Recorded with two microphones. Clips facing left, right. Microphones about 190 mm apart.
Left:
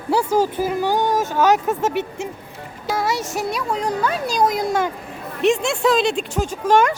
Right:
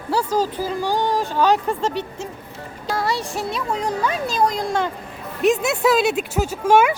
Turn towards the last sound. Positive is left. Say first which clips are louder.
# right 1 dB
turn(degrees=-10)  # may be behind; listen again after turning